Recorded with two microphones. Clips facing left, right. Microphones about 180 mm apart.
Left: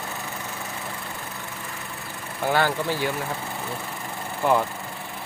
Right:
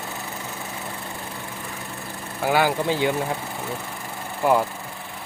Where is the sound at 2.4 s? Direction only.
10° right (ahead or behind).